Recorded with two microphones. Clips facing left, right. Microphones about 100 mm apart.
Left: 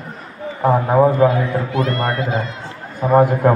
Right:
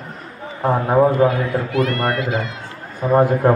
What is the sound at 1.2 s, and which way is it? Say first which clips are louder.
A man's voice: left 1 dB; 25° left (ahead or behind).